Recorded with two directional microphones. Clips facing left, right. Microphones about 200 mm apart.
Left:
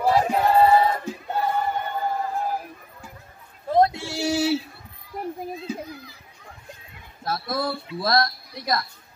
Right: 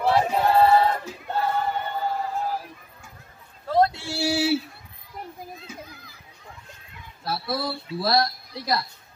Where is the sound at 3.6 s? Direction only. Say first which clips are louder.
Left 2 dB; 20° left (ahead or behind).